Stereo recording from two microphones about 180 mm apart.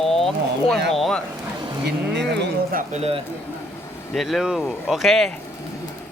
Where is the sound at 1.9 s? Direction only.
75° right (ahead or behind).